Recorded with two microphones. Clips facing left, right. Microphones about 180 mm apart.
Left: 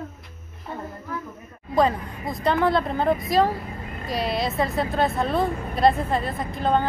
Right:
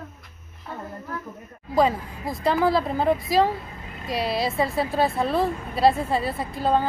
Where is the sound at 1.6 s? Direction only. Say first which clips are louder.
Even; 5° right (ahead or behind).